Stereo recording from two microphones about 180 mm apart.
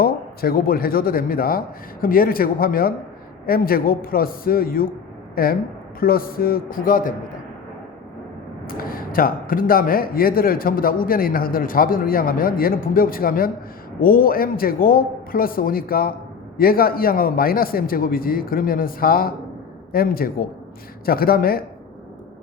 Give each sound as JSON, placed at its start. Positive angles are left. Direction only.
{"t": 0.0, "sound": "a man's voice", "side_deg": 55}
{"t": 8.6, "sound": "a man's voice", "side_deg": 55}